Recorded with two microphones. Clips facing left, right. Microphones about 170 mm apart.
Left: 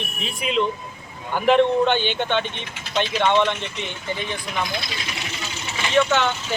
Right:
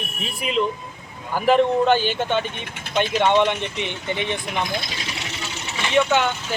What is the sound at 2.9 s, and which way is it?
Speech, 50° right (ahead or behind).